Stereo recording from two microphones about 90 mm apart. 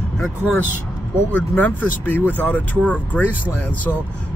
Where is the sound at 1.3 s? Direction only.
20° left (ahead or behind).